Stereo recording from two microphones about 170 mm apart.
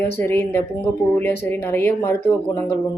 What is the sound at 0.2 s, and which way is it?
Speech, 15° left (ahead or behind).